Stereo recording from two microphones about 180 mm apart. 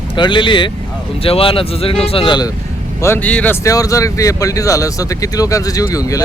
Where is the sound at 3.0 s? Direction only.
10° left (ahead or behind).